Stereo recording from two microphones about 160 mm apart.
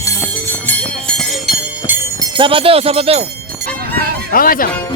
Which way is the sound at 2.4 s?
35° right (ahead or behind).